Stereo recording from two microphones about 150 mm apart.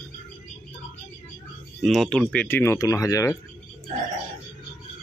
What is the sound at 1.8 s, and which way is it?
Speech, centre (ahead or behind).